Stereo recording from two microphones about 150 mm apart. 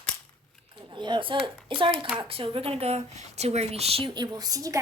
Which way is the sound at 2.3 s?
40° right (ahead or behind).